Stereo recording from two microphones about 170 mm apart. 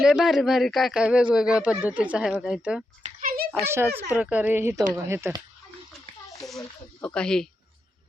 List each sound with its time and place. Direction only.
0.0 s speech: 5° right (ahead or behind)
3.0 s a sound: 50° right (ahead or behind)
3.7 s speech: 15° right (ahead or behind)
7.0 s speech: 5° left (ahead or behind)